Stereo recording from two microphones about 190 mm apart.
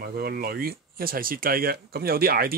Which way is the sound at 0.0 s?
55° right (ahead or behind).